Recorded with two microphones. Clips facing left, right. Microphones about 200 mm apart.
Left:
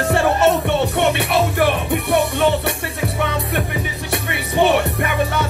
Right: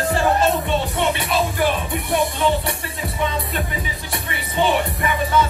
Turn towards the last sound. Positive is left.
turn(degrees=65)  # may be behind; listen again after turning